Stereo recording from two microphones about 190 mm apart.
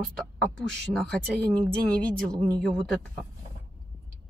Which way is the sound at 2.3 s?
20° right (ahead or behind).